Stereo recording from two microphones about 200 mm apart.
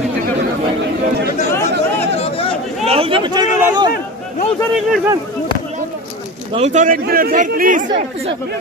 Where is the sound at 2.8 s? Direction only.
30° right (ahead or behind).